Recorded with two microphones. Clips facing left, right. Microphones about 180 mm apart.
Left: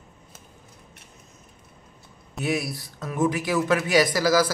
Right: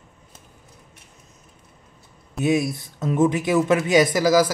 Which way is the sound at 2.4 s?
20° right (ahead or behind).